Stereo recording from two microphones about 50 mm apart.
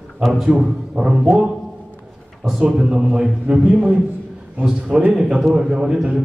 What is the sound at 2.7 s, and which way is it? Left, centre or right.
A man's voice, centre.